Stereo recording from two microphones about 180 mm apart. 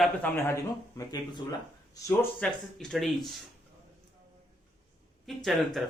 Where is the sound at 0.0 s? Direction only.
10° left (ahead or behind).